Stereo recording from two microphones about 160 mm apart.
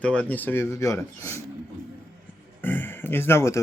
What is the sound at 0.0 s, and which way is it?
Speech, 10° left (ahead or behind).